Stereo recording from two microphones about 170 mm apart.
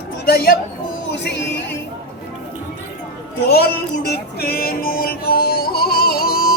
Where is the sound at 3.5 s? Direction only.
70° left (ahead or behind).